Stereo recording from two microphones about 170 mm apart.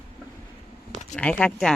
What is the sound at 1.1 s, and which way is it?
Speech, 5° left (ahead or behind).